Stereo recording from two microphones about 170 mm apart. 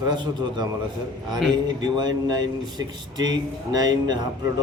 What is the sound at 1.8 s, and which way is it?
Speech, 25° right (ahead or behind).